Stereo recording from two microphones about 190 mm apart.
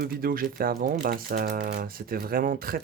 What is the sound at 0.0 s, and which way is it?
Speech, 50° right (ahead or behind).